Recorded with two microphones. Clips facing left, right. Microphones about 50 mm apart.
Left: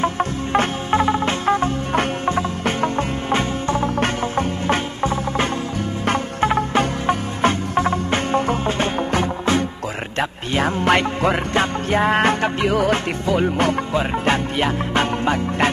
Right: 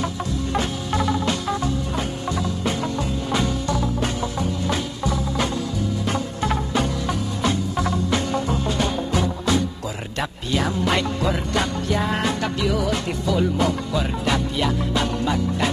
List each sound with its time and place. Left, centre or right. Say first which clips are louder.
0.0 s music: left 5 dB; left